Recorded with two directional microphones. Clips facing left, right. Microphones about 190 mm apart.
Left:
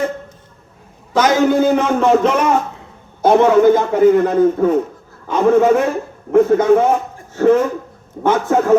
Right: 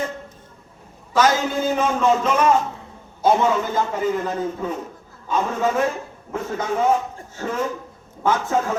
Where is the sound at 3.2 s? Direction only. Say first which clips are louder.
Left 9 dB; 60° left (ahead or behind).